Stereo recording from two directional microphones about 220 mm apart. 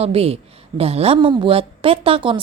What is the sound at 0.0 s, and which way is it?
A woman's voice, 25° right (ahead or behind).